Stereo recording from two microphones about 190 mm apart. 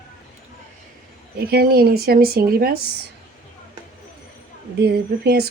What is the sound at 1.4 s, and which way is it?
A woman's voice, 55° right (ahead or behind).